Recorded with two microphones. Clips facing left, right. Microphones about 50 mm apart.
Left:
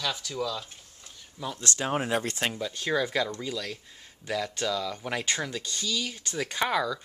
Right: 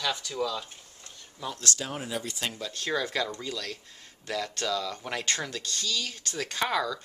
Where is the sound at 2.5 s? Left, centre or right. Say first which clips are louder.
Left 2 dB; centre.